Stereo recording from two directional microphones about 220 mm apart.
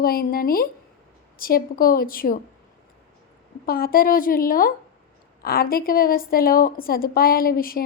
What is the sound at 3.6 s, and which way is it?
A woman's voice, 40° left (ahead or behind).